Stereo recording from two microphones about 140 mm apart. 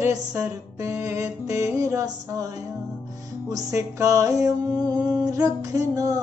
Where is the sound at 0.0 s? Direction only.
20° right (ahead or behind).